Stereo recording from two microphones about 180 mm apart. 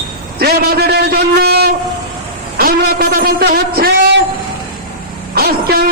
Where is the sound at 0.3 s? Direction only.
60° right (ahead or behind).